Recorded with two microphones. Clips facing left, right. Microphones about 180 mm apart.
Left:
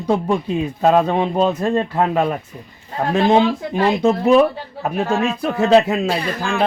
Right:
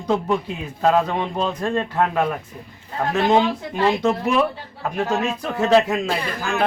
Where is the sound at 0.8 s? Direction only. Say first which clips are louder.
Left 3 dB; 20° left (ahead or behind).